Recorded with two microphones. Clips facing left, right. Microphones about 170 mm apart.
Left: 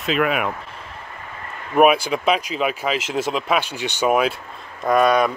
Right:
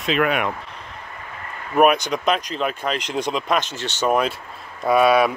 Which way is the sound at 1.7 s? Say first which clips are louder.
Left 1 dB; 5° left (ahead or behind).